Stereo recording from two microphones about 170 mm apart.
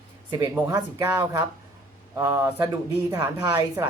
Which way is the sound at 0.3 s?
20° right (ahead or behind).